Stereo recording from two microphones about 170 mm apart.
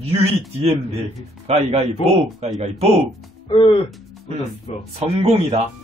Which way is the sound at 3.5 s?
30° left (ahead or behind).